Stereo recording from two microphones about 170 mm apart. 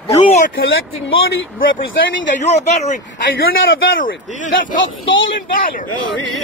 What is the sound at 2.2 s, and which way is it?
Speech, 45° left (ahead or behind).